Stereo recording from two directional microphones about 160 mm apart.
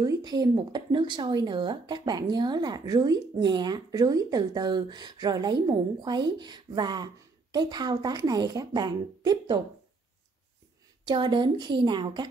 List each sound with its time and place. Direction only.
0.0 s speech: 25° right (ahead or behind)
11.1 s speech: 30° right (ahead or behind)